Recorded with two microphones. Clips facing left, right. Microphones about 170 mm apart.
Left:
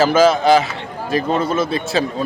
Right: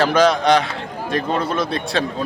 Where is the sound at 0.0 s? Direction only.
5° left (ahead or behind).